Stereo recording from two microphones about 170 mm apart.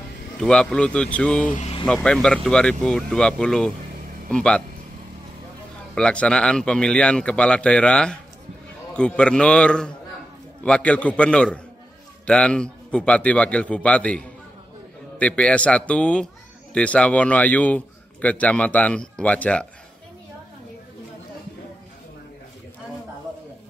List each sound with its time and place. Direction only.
0.4 s a man's voice: 5° left (ahead or behind)
1.5 s speech: 40° left (ahead or behind)
1.9 s a man's voice: 5° left (ahead or behind)
5.9 s a man's voice: 5° left (ahead or behind)